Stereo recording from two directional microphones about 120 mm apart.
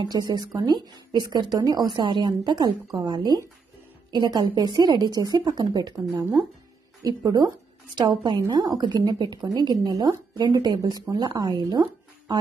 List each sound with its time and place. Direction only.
0.0 s speech: 35° right (ahead or behind)
7.0 s a woman's voice: 30° right (ahead or behind)